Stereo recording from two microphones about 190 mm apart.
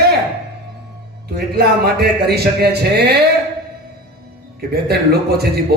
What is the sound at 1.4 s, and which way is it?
A man's voice, 55° right (ahead or behind).